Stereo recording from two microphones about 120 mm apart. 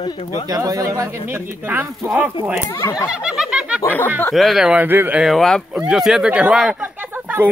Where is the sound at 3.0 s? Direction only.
10° right (ahead or behind).